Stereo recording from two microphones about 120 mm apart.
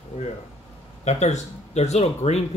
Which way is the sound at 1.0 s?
70° left (ahead or behind).